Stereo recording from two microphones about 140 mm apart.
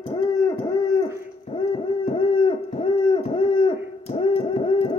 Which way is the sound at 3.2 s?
40° left (ahead or behind).